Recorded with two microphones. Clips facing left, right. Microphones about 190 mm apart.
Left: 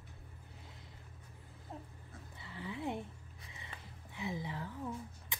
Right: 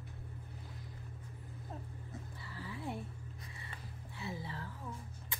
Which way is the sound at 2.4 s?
20° left (ahead or behind).